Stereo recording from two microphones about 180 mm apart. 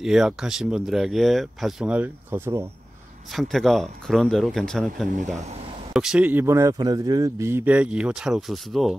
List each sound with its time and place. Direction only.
0.0 s speech: centre (ahead or behind)
3.3 s speech: centre (ahead or behind)
5.1 s speech: 45° right (ahead or behind)
5.9 s speech: 5° right (ahead or behind)